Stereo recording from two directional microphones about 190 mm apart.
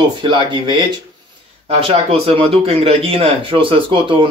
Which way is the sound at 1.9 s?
30° right (ahead or behind).